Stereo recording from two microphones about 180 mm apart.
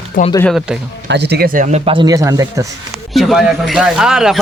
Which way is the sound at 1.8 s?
25° right (ahead or behind).